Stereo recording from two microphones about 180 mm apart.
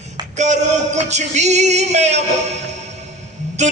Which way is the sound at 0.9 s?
40° right (ahead or behind).